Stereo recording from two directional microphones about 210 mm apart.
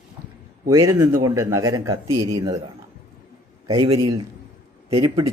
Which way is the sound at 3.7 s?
20° right (ahead or behind).